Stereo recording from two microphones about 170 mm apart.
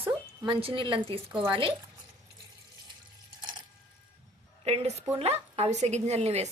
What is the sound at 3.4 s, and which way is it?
Water, 25° right (ahead or behind).